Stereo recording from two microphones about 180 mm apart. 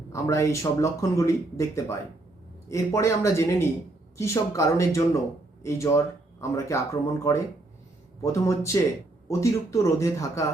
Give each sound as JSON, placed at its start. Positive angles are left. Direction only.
{"t": 0.1, "sound": "speech", "side_deg": 15}